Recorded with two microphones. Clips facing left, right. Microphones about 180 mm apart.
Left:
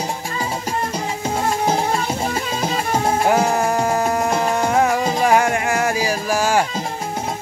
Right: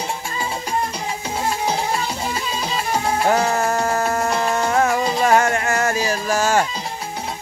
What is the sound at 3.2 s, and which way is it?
Music, 10° left (ahead or behind).